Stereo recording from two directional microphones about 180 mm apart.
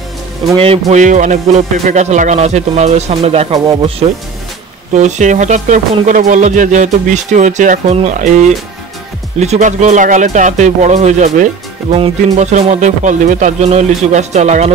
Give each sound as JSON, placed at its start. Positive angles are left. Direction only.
{"t": 0.6, "sound": "speech", "side_deg": -35}
{"t": 3.5, "sound": "speech", "side_deg": -20}
{"t": 4.9, "sound": "speech", "side_deg": -40}